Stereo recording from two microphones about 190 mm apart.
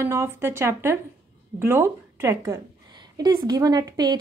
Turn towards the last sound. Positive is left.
turn(degrees=-20)  # may be behind; listen again after turning